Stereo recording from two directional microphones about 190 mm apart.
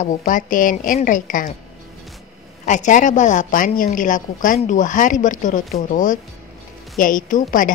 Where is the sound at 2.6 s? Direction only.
40° left (ahead or behind).